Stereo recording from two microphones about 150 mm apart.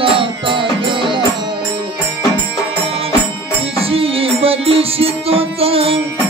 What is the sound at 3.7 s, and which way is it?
Music, 40° right (ahead or behind).